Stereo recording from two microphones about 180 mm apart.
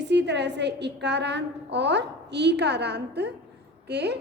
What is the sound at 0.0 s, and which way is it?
A woman's voice, 75° right (ahead or behind).